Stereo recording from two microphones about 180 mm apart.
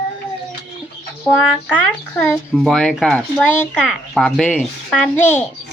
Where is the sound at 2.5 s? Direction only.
Centre (ahead or behind).